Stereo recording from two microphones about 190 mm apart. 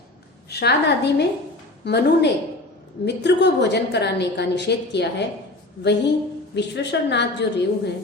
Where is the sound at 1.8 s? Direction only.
60° left (ahead or behind).